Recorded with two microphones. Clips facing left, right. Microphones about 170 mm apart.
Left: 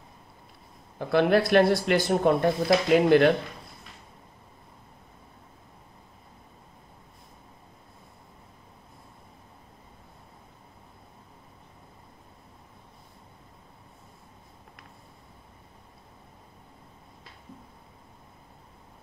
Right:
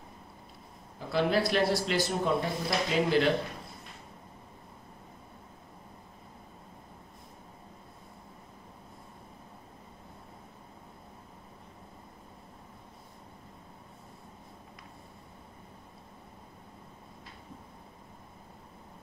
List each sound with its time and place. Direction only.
0.9 s speech: 60° left (ahead or behind)